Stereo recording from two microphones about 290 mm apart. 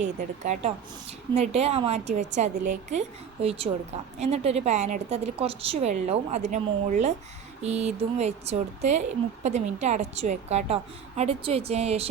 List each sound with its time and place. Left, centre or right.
0.0 s speech: right